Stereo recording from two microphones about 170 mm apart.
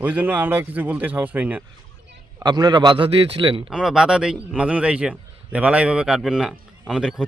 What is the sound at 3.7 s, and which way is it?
A man's voice, 5° right (ahead or behind).